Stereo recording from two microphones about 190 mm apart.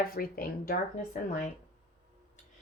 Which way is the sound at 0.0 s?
50° left (ahead or behind).